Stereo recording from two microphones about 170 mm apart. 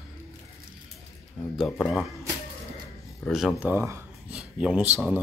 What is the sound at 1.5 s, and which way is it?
Speech, 5° left (ahead or behind).